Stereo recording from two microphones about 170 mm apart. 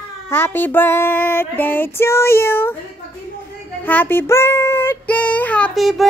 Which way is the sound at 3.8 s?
10° left (ahead or behind).